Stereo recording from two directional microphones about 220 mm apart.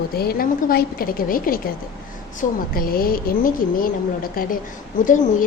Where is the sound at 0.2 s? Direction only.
45° left (ahead or behind).